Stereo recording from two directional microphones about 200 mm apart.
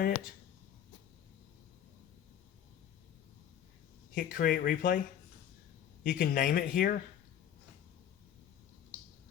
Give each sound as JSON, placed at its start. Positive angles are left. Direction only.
{"t": 4.1, "sound": "speech", "side_deg": 45}
{"t": 6.0, "sound": "speech", "side_deg": 45}